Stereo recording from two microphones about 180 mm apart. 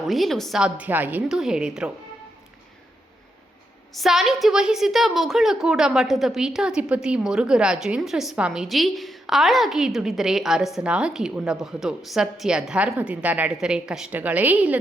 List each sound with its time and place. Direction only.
0.1 s a woman's voice: centre (ahead or behind)
3.9 s a woman's voice: centre (ahead or behind)